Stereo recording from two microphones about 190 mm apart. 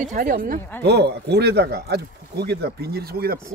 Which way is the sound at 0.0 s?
45° right (ahead or behind).